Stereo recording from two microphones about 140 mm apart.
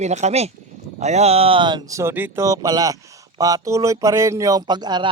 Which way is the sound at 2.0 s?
15° right (ahead or behind).